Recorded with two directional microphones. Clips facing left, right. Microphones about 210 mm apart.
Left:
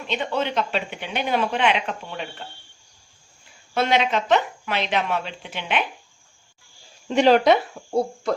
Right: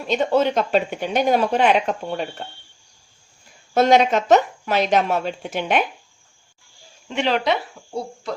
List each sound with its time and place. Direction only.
0.1 s speech: 40° right (ahead or behind)
3.8 s speech: 45° right (ahead or behind)
7.1 s speech: 40° left (ahead or behind)